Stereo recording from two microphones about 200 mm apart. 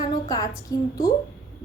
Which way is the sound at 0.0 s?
20° left (ahead or behind).